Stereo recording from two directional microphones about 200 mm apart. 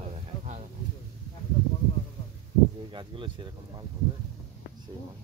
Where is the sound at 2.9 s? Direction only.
25° right (ahead or behind).